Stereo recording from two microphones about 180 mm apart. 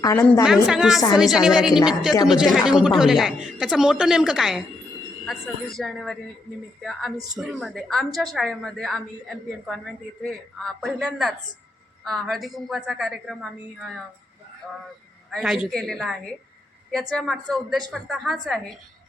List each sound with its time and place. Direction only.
0.0 s a woman's voice: 15° left (ahead or behind)
0.4 s a woman's voice: 5° right (ahead or behind)
7.3 s a woman's voice: centre (ahead or behind)
15.3 s a woman's voice: centre (ahead or behind)